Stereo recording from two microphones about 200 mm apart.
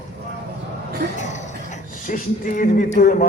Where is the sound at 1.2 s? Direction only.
35° left (ahead or behind).